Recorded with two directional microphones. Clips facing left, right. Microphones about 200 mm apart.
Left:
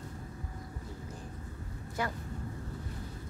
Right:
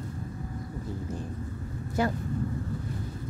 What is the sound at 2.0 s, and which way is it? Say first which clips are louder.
Speech: right 8 dB; 25° right (ahead or behind).